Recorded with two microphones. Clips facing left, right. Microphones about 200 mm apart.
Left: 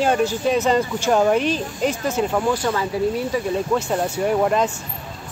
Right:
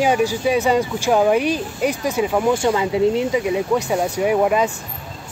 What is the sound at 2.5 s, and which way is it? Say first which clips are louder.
Speech: right 4 dB; 20° right (ahead or behind).